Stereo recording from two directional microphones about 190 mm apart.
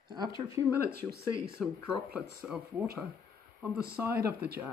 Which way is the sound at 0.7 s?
50° right (ahead or behind).